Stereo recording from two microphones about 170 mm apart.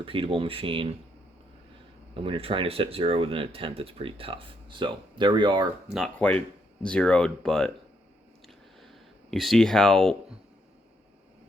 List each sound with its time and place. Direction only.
0.0 s speech: 30° right (ahead or behind)
2.1 s speech: 35° right (ahead or behind)
6.1 s speech: 10° left (ahead or behind)
8.8 s a sound: centre (ahead or behind)